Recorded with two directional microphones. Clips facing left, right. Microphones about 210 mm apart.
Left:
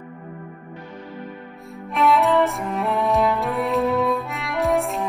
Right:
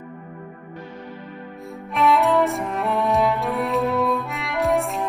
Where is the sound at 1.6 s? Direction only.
Centre (ahead or behind).